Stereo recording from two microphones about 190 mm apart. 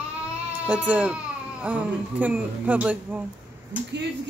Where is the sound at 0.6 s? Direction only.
5° right (ahead or behind).